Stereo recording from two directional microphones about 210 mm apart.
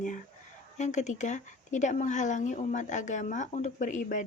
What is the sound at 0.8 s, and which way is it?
Speech, 35° left (ahead or behind).